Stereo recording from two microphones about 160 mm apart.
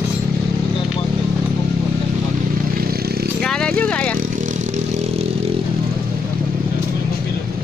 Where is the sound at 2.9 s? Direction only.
75° right (ahead or behind).